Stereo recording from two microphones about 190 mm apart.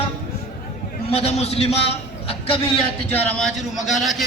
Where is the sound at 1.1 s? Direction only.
35° left (ahead or behind).